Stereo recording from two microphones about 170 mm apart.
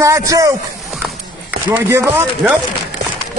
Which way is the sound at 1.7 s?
10° right (ahead or behind).